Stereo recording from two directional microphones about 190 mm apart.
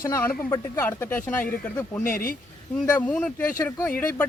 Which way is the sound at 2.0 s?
45° left (ahead or behind).